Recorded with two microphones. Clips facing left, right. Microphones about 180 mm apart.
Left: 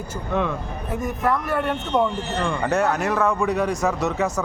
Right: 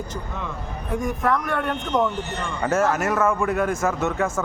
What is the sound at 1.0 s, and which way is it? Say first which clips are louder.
Speech: even; 5° left (ahead or behind).